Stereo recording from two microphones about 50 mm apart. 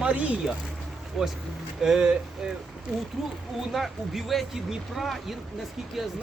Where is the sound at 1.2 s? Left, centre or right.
Centre.